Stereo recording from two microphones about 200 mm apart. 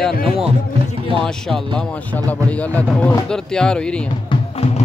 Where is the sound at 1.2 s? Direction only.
Centre (ahead or behind).